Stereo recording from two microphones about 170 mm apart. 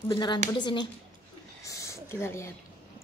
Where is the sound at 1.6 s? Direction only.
20° left (ahead or behind).